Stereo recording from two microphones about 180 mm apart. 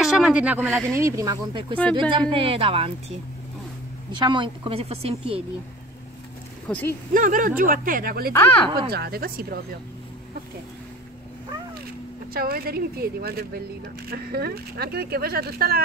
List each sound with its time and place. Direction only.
0.0 s speech: 5° right (ahead or behind)
0.9 s speech: 15° right (ahead or behind); by 3.2 s 30° right (ahead or behind)
4.2 s a woman's voice: 25° right (ahead or behind)
6.7 s speech: 10° left (ahead or behind)
7.2 s speech: 50° right (ahead or behind)
8.3 s speech: 10° left (ahead or behind)
8.6 s speech: 25° right (ahead or behind)
8.9 s speech: 60° right (ahead or behind)
12.4 s speech: 60° right (ahead or behind)